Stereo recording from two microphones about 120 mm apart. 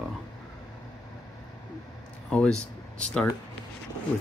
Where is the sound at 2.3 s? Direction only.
10° left (ahead or behind).